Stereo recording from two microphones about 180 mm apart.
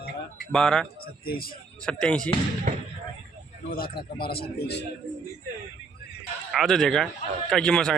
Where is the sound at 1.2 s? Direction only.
55° left (ahead or behind).